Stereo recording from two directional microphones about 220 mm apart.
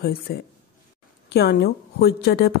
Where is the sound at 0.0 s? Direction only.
45° left (ahead or behind).